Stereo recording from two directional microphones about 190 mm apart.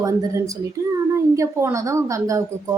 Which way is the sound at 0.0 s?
15° right (ahead or behind).